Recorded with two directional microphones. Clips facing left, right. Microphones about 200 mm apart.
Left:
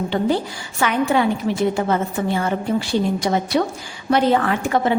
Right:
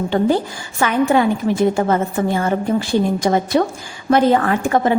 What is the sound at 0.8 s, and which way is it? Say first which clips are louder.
A woman's voice: right 3 dB; 45° right (ahead or behind).